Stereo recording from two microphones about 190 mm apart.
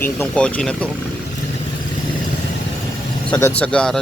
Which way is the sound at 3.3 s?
5° left (ahead or behind).